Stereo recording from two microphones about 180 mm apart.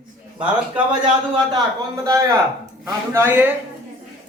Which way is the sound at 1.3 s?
20° right (ahead or behind).